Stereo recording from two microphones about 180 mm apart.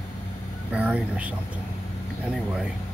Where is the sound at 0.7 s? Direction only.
5° right (ahead or behind).